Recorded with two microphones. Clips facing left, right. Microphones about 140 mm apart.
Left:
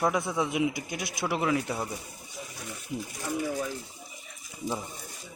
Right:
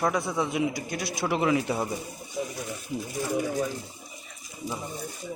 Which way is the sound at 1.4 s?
5° right (ahead or behind).